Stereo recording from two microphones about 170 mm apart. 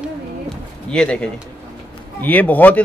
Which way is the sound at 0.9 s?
5° left (ahead or behind).